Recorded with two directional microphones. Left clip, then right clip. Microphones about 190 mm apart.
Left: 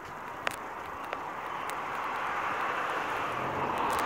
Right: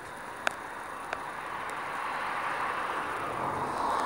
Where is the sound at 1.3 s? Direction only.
55° left (ahead or behind); by 3.5 s 40° left (ahead or behind).